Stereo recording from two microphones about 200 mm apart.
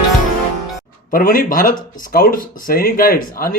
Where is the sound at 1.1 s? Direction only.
45° left (ahead or behind).